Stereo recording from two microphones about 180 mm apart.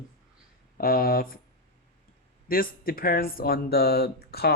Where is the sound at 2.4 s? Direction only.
50° left (ahead or behind).